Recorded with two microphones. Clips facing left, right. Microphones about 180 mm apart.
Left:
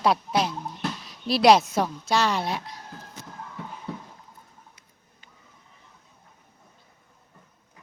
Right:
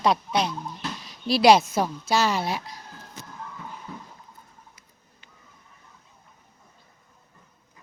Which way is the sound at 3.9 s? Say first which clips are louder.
Left 7 dB; 75° left (ahead or behind).